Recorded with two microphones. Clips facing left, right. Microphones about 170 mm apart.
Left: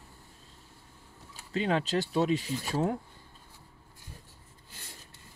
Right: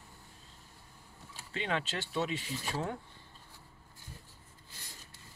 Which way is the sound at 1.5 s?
40° left (ahead or behind).